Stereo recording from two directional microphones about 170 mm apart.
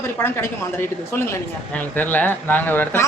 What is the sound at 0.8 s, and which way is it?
Speech, 15° left (ahead or behind).